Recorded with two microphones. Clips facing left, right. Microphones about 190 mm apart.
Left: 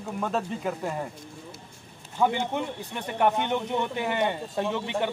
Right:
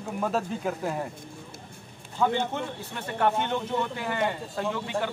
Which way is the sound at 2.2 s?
15° left (ahead or behind).